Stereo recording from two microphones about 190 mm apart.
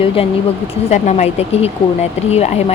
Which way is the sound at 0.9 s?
40° left (ahead or behind).